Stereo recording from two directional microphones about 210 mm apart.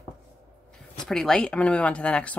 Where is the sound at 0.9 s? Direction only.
Centre (ahead or behind).